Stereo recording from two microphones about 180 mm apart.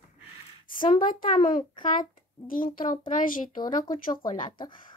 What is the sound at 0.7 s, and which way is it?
Speech, 50° left (ahead or behind).